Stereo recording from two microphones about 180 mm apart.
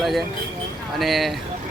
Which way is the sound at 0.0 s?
Centre (ahead or behind).